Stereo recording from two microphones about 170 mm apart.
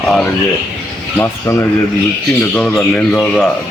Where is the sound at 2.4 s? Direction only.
5° left (ahead or behind).